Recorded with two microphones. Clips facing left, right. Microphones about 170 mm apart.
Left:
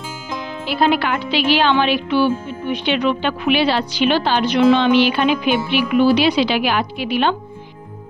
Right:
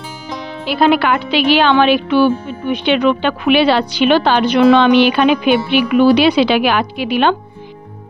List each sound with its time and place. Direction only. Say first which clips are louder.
0.7 s a woman's voice: right 5 dB; 70° right (ahead or behind)